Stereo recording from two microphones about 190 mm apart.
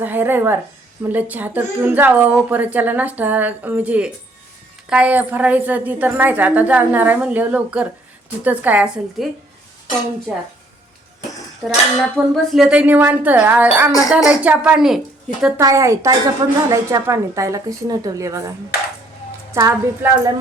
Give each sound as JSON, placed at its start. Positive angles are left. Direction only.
{"t": 0.0, "sound": "a woman's voice", "side_deg": -10}
{"t": 11.6, "sound": "a woman's voice", "side_deg": 0}
{"t": 15.6, "sound": "a woman's voice", "side_deg": -15}